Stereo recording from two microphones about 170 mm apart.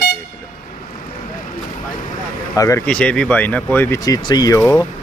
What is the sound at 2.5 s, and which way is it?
Speech, 20° left (ahead or behind).